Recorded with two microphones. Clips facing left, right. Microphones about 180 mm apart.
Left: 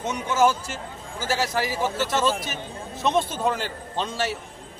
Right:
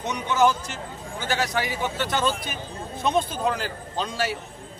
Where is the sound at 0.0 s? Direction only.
5° left (ahead or behind).